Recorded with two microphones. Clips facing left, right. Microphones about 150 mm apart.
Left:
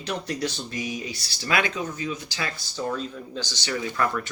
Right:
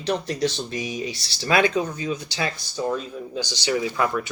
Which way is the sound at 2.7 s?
15° right (ahead or behind).